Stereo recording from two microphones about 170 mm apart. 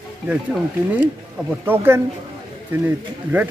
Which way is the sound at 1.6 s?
15° right (ahead or behind).